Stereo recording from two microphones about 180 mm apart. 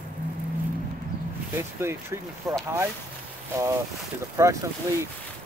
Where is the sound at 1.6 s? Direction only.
15° right (ahead or behind).